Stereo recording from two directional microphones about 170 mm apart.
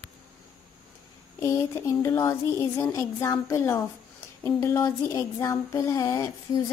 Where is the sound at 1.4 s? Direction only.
15° left (ahead or behind).